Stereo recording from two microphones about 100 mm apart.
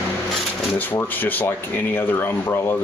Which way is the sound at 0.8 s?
20° left (ahead or behind).